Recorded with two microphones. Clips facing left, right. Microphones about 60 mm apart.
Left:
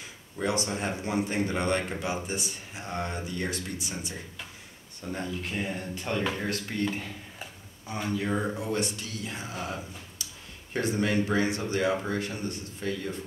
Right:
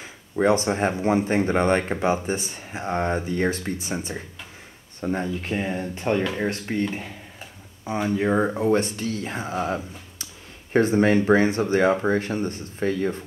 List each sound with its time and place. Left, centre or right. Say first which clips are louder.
0.4 s speech: right 9 dB; right